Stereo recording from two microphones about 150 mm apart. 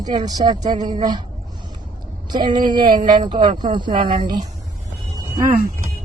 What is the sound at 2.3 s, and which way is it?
A woman's voice, 30° right (ahead or behind).